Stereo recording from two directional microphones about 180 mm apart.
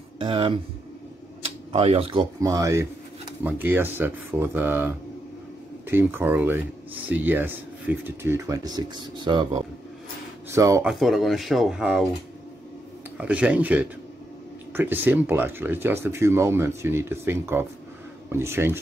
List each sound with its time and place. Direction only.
0.2 s speech: 25° right (ahead or behind)
1.4 s tick-tock: 35° right (ahead or behind)
2.4 s speech: 20° right (ahead or behind)
10.5 s speech: 15° right (ahead or behind)
10.9 s speech: centre (ahead or behind)
13.2 s speech: 5° right (ahead or behind)